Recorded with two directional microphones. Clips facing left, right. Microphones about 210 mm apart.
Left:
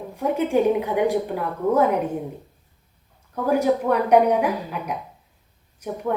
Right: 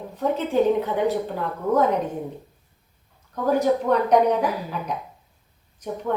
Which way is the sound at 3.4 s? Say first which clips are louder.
Even; 10° left (ahead or behind).